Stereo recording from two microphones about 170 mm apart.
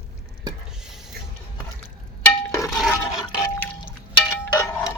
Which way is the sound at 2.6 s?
Centre (ahead or behind).